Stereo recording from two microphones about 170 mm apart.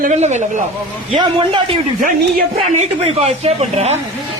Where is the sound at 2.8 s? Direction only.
35° right (ahead or behind).